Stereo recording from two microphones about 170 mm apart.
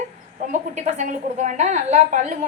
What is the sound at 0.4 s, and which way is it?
A woman's voice, 45° right (ahead or behind).